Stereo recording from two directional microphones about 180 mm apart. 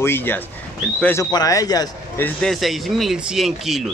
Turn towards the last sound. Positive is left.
turn(degrees=0)  # may be behind; listen again after turning